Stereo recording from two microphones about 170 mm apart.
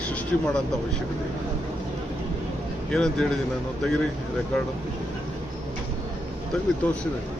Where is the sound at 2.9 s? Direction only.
5° left (ahead or behind).